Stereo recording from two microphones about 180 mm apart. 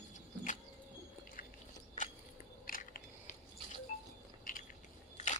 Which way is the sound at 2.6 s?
50° left (ahead or behind).